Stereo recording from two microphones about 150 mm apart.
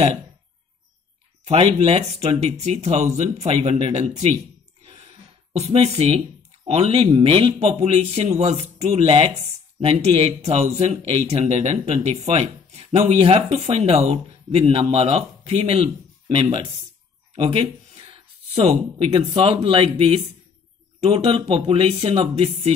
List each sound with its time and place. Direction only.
1.4 s speech: 40° right (ahead or behind)
4.8 s a sound: 45° right (ahead or behind)
6.7 s speech: 45° right (ahead or behind)